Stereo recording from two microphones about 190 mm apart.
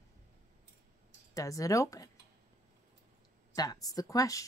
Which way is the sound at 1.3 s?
15° left (ahead or behind).